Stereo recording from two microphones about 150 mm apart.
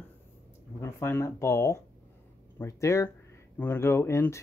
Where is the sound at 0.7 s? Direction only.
15° left (ahead or behind).